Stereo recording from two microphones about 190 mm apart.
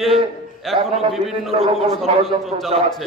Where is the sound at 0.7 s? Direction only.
30° right (ahead or behind).